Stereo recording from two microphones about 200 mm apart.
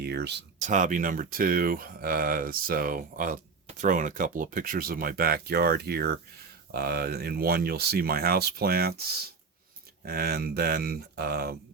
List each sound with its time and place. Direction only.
0.0 s speech: 55° right (ahead or behind)
0.6 s speech: 40° right (ahead or behind)